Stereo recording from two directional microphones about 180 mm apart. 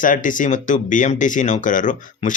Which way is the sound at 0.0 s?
45° left (ahead or behind).